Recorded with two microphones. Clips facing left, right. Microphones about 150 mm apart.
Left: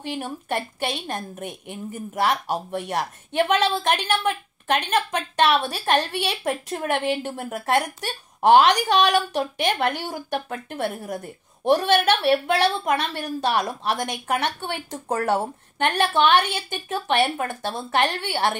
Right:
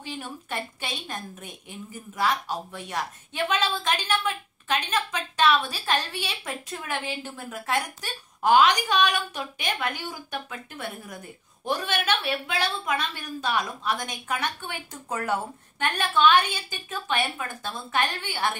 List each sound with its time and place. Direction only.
0.0 s a woman's voice: 60° left (ahead or behind)